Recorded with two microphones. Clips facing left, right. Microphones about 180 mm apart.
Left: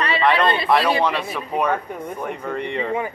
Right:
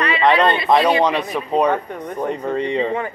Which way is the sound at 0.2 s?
20° right (ahead or behind).